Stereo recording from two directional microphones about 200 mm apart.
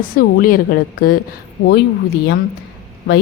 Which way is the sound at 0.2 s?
45° left (ahead or behind).